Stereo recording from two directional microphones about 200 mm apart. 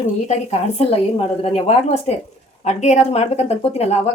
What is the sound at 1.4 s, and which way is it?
Speech, 30° left (ahead or behind).